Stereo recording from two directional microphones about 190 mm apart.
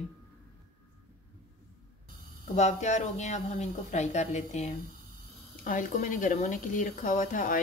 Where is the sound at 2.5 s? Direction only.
35° left (ahead or behind).